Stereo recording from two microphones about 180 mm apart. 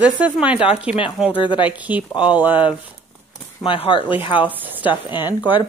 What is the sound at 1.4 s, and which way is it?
Speech, 25° left (ahead or behind).